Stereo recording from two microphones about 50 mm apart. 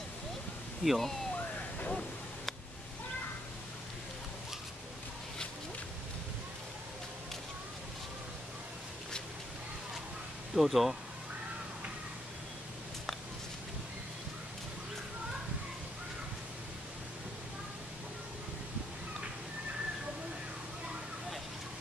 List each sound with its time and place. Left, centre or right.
0.8 s speech: centre
1.3 s a sound: left
10.5 s speech: centre